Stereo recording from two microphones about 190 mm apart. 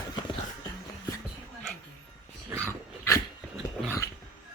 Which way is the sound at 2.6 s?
15° left (ahead or behind).